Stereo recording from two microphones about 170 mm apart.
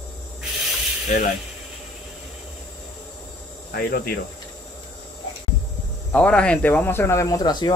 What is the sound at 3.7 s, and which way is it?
Speech, 60° left (ahead or behind).